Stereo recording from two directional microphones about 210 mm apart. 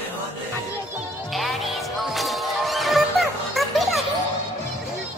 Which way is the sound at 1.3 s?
Centre (ahead or behind).